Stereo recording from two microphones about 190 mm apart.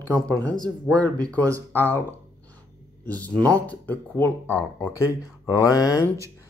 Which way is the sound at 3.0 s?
10° left (ahead or behind).